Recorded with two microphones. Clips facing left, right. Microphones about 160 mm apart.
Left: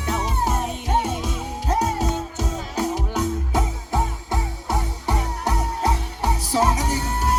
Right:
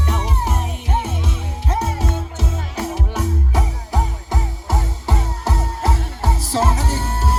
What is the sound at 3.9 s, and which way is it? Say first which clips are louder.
Music: even; 20° right (ahead or behind).